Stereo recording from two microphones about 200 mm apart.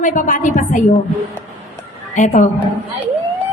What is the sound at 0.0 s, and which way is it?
Speech, 40° left (ahead or behind).